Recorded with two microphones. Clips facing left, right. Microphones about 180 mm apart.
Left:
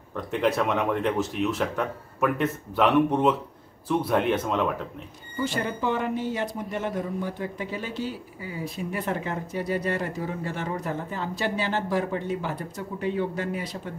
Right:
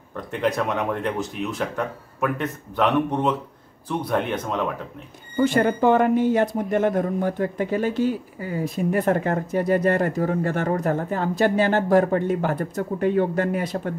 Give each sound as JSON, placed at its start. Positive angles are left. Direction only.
{"t": 0.1, "sound": "speech", "side_deg": 0}
{"t": 5.4, "sound": "speech", "side_deg": -55}